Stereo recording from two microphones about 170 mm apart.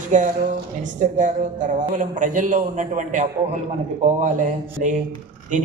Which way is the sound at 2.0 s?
50° right (ahead or behind).